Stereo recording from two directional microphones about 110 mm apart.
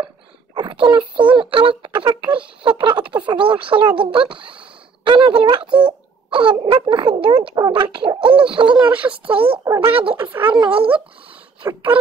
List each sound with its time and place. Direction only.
0.6 s speech: 45° right (ahead or behind)
5.7 s speech: 10° right (ahead or behind)
6.3 s speech: 45° right (ahead or behind)
8.7 s speech: 10° right (ahead or behind)
9.1 s speech: 55° right (ahead or behind)
10.1 s speech: 15° right (ahead or behind)
10.5 s speech: 50° right (ahead or behind)
11.6 s speech: 15° right (ahead or behind)